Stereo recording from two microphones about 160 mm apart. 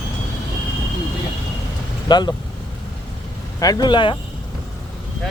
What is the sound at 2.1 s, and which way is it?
Speech, 25° left (ahead or behind).